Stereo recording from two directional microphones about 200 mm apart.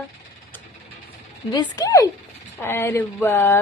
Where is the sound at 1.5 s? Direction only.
15° left (ahead or behind).